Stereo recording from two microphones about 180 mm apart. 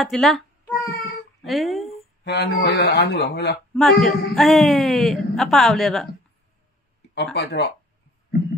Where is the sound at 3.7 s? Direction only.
Centre (ahead or behind).